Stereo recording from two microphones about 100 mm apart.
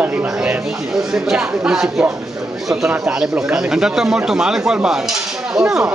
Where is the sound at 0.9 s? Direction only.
5° right (ahead or behind).